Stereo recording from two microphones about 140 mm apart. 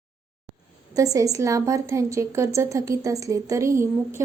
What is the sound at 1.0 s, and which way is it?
A woman's voice, 25° right (ahead or behind).